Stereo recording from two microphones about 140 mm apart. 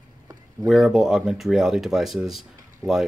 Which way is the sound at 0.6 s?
Centre (ahead or behind).